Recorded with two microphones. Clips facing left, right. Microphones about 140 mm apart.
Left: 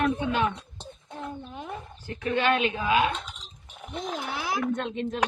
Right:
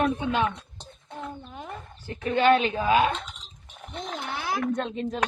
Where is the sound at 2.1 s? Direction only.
35° right (ahead or behind).